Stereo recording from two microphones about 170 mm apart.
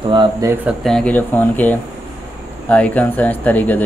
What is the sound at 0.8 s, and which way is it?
Speech, 5° left (ahead or behind).